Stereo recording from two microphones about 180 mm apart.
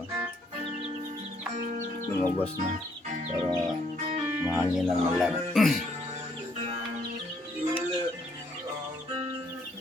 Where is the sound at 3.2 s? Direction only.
30° right (ahead or behind).